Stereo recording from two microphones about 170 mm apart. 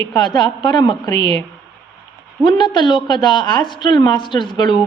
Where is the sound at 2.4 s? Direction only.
25° left (ahead or behind).